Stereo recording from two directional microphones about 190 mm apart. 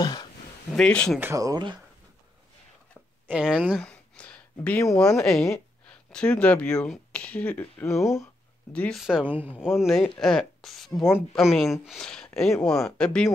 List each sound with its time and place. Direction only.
0.0 s a sound: 20° left (ahead or behind)
0.7 s speech: 5° left (ahead or behind)
1.2 s speech: 15° right (ahead or behind)
3.3 s speech: 5° right (ahead or behind); by 8.0 s 10° left (ahead or behind)
8.0 s speech: centre (ahead or behind)